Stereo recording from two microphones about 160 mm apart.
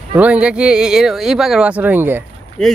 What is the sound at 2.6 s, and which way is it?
Speech, centre (ahead or behind).